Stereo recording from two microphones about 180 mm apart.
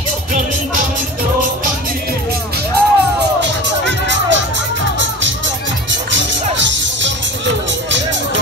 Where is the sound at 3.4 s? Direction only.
80° right.